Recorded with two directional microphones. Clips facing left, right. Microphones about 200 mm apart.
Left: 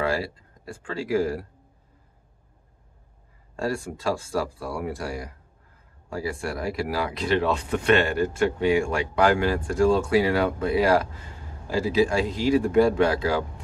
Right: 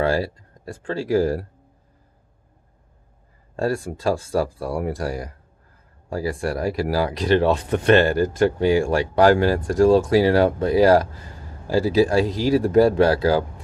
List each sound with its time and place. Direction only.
0.0 s a sound: 30° right (ahead or behind)
0.8 s speech: 35° right (ahead or behind)
3.5 s speech: 35° right (ahead or behind)